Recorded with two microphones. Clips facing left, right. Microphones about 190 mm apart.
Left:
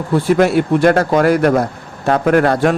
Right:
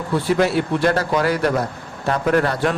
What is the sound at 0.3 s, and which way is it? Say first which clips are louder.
Speech: left 5 dB; 55° left (ahead or behind).